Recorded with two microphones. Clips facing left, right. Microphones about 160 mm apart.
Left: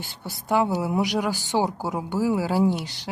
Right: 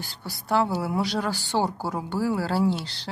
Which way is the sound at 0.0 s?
20° left (ahead or behind).